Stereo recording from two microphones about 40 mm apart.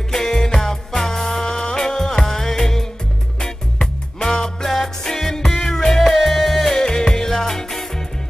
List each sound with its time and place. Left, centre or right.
0.1 s music: centre
6.7 s music: centre